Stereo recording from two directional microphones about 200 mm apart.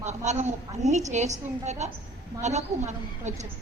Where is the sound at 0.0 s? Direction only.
35° right (ahead or behind).